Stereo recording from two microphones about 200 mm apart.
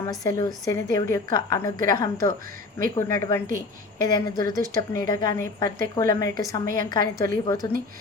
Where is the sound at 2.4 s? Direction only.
45° right (ahead or behind).